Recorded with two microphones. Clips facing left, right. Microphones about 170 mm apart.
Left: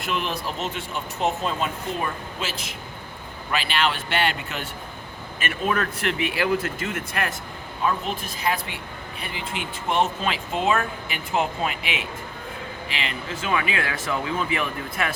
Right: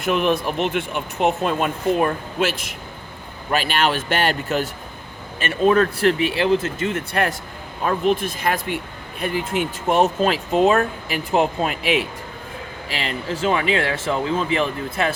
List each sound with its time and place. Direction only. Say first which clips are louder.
0.0 s speech: right 8 dB; 55° right (ahead or behind)
5.4 s speech: right 8 dB; 30° right (ahead or behind)
7.9 s speech: right 7 dB; 55° right (ahead or behind); by 15.1 s 25° right (ahead or behind)